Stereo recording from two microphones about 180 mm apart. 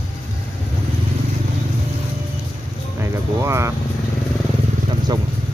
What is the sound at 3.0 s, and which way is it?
Speech, 15° right (ahead or behind).